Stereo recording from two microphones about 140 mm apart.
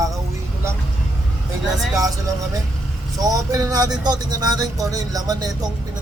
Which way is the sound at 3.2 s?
25° right (ahead or behind).